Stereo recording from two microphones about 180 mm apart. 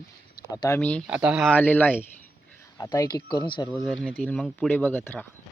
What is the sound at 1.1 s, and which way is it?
Speech, 5° right (ahead or behind).